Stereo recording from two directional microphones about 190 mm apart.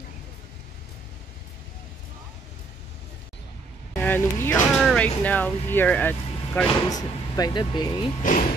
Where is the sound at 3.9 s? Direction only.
10° left (ahead or behind).